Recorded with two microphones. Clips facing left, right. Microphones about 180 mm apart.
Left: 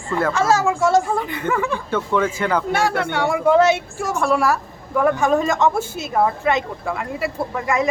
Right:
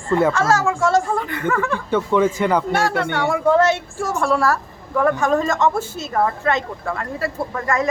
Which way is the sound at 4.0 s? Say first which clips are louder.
Even; centre (ahead or behind).